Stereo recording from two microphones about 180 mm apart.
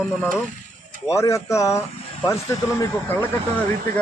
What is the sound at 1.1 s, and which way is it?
Speech, 15° left (ahead or behind).